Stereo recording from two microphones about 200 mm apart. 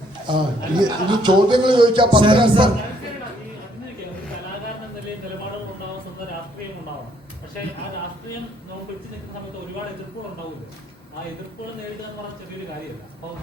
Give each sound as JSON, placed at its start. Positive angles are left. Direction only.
{"t": 0.3, "sound": "a man's voice", "side_deg": -20}